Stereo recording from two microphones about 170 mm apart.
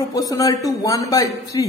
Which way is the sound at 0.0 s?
20° left (ahead or behind).